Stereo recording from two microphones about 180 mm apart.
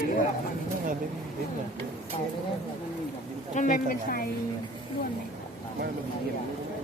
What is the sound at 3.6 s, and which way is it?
Speech, 50° left (ahead or behind).